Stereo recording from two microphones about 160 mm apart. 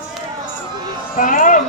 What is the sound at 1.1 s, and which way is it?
Music, 60° left (ahead or behind).